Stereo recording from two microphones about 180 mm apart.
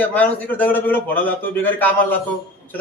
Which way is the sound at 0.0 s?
10° left (ahead or behind).